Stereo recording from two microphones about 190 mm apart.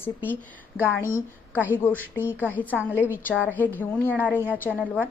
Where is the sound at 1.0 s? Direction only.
10° right (ahead or behind).